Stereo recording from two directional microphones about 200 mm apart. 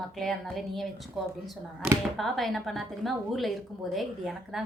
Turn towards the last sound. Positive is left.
turn(degrees=0)  # may be behind; listen again after turning